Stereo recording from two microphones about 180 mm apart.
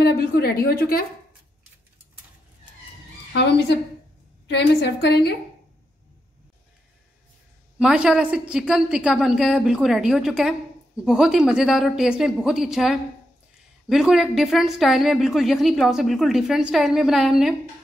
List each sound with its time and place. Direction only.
0.0 s a woman's voice: 60° left (ahead or behind)
3.3 s a woman's voice: 75° left (ahead or behind)
7.8 s a woman's voice: 5° right (ahead or behind)